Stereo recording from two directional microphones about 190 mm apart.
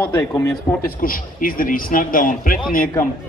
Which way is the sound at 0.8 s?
50° left (ahead or behind).